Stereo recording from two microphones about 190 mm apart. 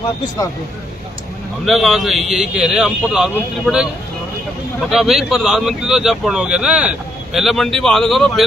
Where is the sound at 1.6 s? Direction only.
Centre (ahead or behind).